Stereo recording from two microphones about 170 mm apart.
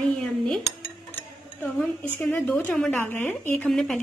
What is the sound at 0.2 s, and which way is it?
Dishes, 5° left (ahead or behind).